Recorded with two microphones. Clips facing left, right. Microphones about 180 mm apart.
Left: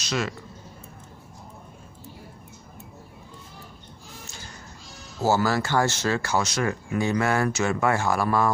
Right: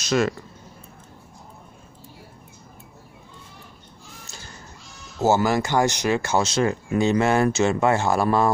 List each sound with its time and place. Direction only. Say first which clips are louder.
0.0 s speech: right 7 dB; 45° right (ahead or behind)
5.2 s speech: right 3 dB; 20° right (ahead or behind)